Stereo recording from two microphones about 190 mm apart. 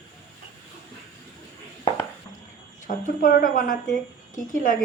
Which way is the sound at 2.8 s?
45° left (ahead or behind).